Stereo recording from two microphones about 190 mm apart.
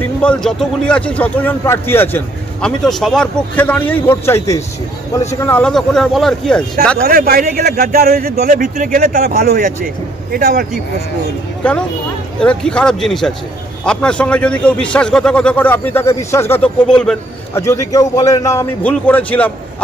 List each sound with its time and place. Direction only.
0.0 s a man's voice: 5° left (ahead or behind)
7.0 s speech: 55° right (ahead or behind)
9.4 s speech: 55° right (ahead or behind)
11.6 s a man's voice: 5° left (ahead or behind)
17.6 s speech: 15° left (ahead or behind)